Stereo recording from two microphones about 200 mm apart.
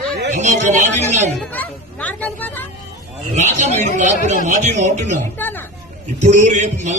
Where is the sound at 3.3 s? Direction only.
35° right (ahead or behind).